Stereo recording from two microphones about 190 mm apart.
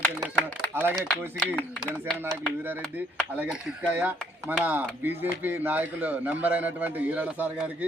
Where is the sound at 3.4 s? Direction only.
10° right (ahead or behind).